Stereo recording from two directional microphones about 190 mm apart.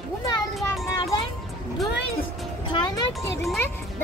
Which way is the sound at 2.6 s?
20° left (ahead or behind).